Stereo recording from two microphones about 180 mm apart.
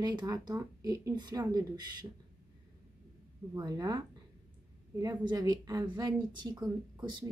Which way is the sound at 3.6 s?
20° right (ahead or behind).